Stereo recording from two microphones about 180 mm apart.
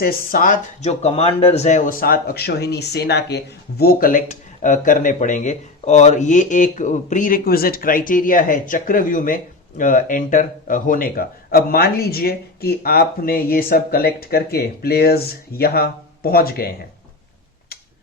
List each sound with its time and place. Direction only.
0.0 s speech: 50° left (ahead or behind)